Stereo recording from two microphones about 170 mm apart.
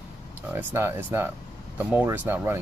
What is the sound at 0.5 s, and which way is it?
Speech, 15° right (ahead or behind).